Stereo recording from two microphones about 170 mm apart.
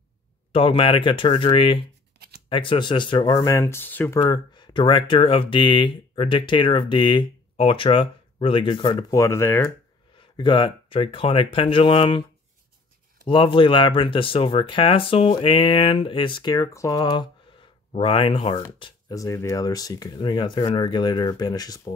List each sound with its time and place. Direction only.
0.5 s speech: 30° left (ahead or behind)
2.1 s shuffling cards: 70° right (ahead or behind)
2.5 s speech: 30° left (ahead or behind); by 4.2 s 10° left (ahead or behind)
4.2 s speech: 25° left (ahead or behind)
10.1 s speech: 30° left (ahead or behind)
13.3 s speech: 30° left (ahead or behind)